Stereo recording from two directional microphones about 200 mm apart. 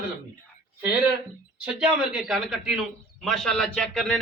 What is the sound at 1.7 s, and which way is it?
A man's voice, 5° right (ahead or behind).